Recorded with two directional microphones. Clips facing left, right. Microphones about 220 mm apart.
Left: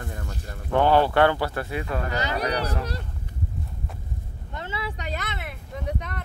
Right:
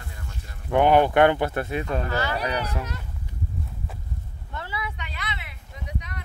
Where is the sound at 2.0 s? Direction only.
20° left (ahead or behind).